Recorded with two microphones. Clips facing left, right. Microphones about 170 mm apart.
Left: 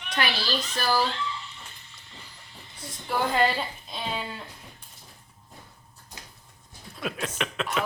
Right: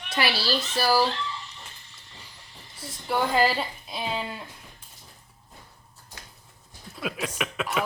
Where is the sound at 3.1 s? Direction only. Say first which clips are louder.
Right 1 dB; 5° right (ahead or behind).